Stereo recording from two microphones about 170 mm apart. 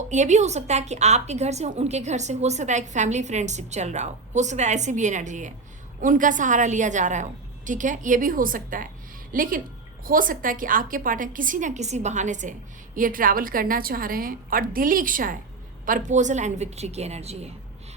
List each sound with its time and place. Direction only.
0.1 s a woman's voice: 45° right (ahead or behind)